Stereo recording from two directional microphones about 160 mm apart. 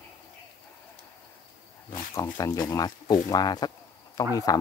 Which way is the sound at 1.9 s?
20° left (ahead or behind).